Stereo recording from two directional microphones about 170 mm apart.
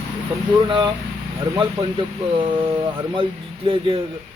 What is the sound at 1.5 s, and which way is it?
A man's voice, 20° right (ahead or behind).